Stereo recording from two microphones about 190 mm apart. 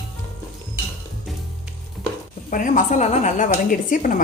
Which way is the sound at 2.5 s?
40° left (ahead or behind).